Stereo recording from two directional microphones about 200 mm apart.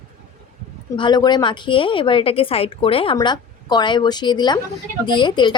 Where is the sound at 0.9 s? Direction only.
20° left (ahead or behind).